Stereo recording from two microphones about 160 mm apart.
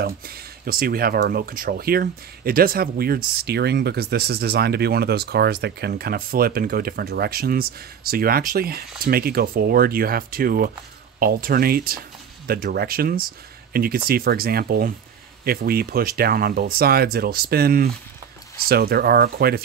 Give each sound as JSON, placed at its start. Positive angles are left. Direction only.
{"t": 0.0, "sound": "speech", "side_deg": -70}